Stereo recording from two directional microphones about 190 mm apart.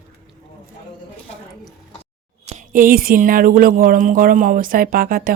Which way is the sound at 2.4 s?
40° right (ahead or behind).